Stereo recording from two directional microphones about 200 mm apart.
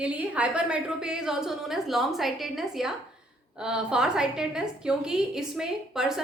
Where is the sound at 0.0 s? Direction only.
5° right (ahead or behind).